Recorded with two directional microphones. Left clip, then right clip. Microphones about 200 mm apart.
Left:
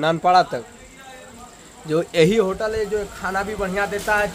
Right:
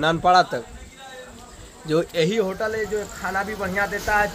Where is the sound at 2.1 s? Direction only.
40° left (ahead or behind).